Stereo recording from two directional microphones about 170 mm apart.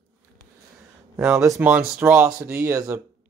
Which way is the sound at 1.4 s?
15° right (ahead or behind).